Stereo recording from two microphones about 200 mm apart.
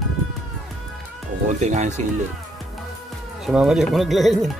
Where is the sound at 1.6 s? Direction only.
35° right (ahead or behind).